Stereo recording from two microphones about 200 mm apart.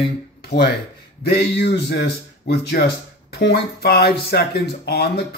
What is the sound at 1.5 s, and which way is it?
Speech, 55° left (ahead or behind).